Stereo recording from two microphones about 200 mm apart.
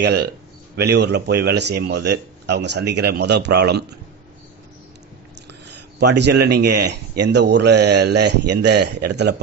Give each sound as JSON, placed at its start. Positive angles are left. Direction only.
{"t": 0.0, "sound": "speech", "side_deg": -55}
{"t": 5.9, "sound": "speech", "side_deg": -55}